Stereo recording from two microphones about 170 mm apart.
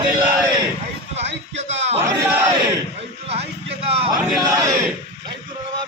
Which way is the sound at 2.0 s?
15° right (ahead or behind).